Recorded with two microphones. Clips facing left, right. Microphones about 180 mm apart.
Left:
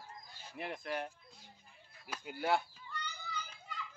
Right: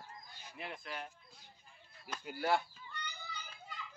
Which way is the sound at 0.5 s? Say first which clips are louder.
Left 5 dB; 55° left (ahead or behind).